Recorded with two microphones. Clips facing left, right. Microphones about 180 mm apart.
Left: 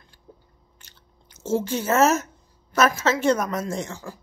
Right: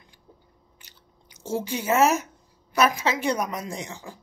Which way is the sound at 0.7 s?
10° right (ahead or behind).